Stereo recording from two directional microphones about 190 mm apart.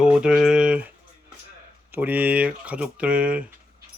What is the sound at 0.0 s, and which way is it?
Speech, 5° right (ahead or behind).